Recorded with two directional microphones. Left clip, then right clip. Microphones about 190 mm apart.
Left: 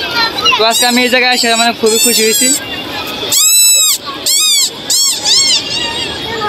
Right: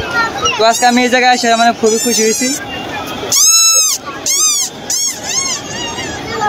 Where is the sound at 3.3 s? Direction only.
35° right (ahead or behind).